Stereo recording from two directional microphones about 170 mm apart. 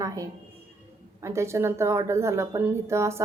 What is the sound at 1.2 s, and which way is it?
A woman's voice, 15° right (ahead or behind).